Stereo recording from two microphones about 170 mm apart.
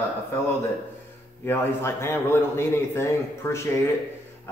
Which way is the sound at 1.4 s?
15° left (ahead or behind).